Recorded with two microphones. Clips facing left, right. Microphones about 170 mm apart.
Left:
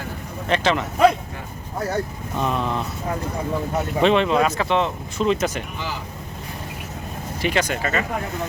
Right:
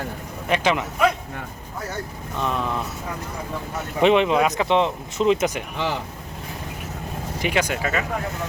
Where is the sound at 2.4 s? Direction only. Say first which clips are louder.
Left 2 dB; centre (ahead or behind).